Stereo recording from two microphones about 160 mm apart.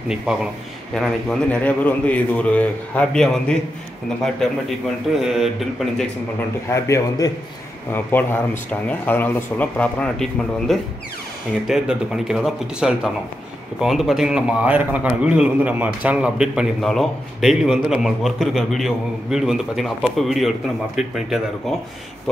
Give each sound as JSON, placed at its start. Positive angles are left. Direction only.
{"t": 0.1, "sound": "a man's voice", "side_deg": -5}
{"t": 5.1, "sound": "a man's voice", "side_deg": 0}
{"t": 6.7, "sound": "a man's voice", "side_deg": 20}